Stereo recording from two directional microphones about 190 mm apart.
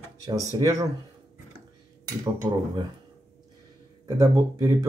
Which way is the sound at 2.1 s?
20° right (ahead or behind).